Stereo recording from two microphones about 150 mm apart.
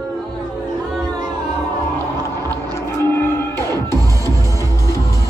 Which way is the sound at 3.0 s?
15° left (ahead or behind).